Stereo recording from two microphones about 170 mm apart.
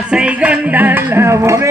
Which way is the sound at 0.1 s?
5° right (ahead or behind).